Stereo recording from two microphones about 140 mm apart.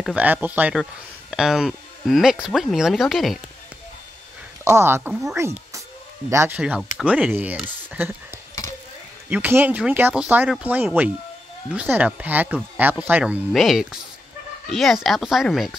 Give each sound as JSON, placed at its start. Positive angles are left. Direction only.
{"t": 0.0, "sound": "speech", "side_deg": -10}
{"t": 4.6, "sound": "speech", "side_deg": -20}
{"t": 13.5, "sound": "speech", "side_deg": 0}